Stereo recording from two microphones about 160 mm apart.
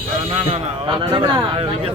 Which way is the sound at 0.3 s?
40° right (ahead or behind).